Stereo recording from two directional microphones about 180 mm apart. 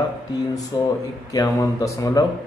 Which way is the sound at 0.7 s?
20° left (ahead or behind).